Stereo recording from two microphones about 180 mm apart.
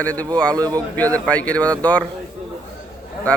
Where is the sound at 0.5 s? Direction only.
20° right (ahead or behind).